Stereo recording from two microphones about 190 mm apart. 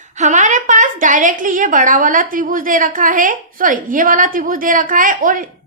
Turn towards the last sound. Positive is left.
turn(degrees=-45)  # may be behind; listen again after turning